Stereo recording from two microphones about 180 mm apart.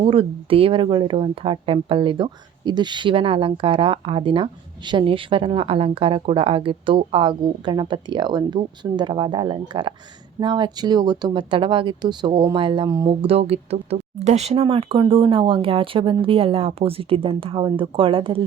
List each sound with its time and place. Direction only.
0.0 s speech: 30° right (ahead or behind)
13.2 s speech: 35° right (ahead or behind)